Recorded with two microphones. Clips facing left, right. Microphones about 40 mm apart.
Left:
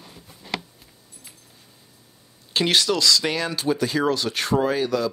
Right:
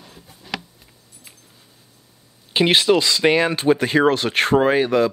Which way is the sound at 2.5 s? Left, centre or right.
Right.